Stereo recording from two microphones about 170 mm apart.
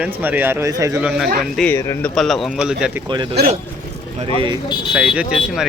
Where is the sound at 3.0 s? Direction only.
25° right (ahead or behind).